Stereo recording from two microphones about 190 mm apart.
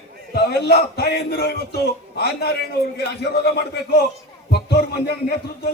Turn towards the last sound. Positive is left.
turn(degrees=55)  # may be behind; listen again after turning